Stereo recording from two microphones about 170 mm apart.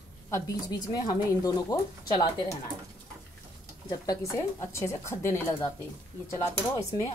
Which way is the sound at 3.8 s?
20° left (ahead or behind).